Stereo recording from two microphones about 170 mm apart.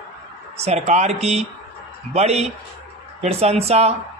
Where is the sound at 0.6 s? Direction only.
40° right (ahead or behind).